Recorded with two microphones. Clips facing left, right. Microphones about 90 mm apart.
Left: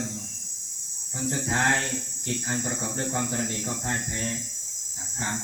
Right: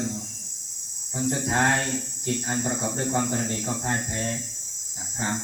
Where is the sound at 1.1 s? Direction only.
5° right (ahead or behind).